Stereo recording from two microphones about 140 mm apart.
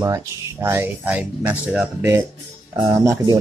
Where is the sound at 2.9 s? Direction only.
20° right (ahead or behind).